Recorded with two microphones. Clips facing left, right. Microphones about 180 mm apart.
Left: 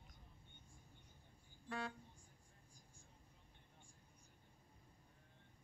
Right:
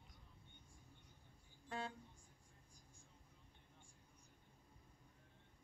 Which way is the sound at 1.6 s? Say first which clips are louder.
Left 1 dB; 25° right (ahead or behind).